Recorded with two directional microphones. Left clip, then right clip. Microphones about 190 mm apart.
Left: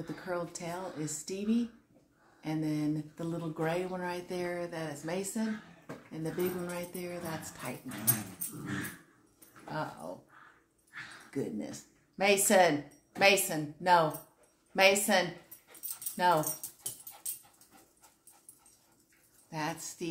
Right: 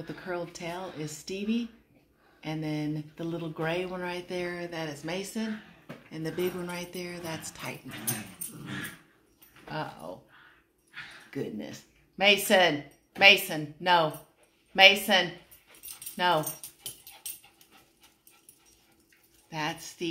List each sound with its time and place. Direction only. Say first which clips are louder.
0.0 s speech: right 1 dB; 20° right (ahead or behind)
9.7 s speech: right 2 dB; 20° right (ahead or behind)
11.2 s a woman's voice: right 1 dB; 20° right (ahead or behind)
19.5 s speech: right 3 dB; 20° right (ahead or behind)